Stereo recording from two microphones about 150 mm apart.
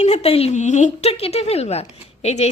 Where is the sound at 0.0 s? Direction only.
45° left (ahead or behind).